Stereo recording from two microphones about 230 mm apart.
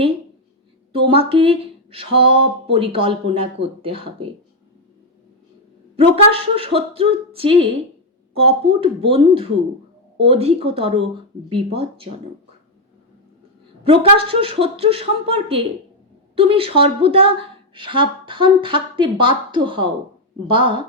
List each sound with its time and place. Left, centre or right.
0.9 s speech: right
6.0 s speech: right
13.8 s speech: right